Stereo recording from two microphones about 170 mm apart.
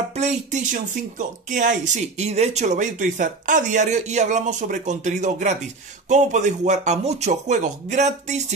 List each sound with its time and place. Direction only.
0.1 s speech: 40° right (ahead or behind)